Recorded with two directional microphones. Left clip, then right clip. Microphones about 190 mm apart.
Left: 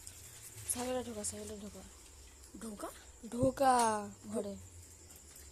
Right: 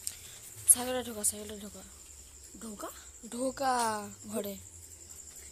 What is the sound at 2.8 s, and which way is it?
Speech, 20° right (ahead or behind).